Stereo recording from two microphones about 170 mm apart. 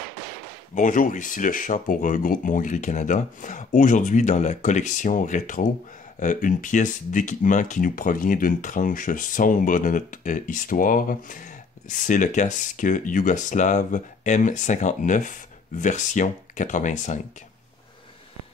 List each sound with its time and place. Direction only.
0.7 s speech: 50° left (ahead or behind)